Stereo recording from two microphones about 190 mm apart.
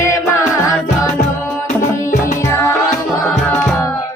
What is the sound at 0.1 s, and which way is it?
Music, 15° left (ahead or behind).